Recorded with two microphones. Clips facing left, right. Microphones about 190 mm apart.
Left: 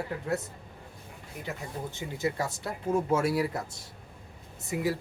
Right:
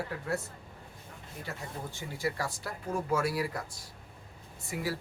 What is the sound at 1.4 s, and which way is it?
Speech, 20° left (ahead or behind).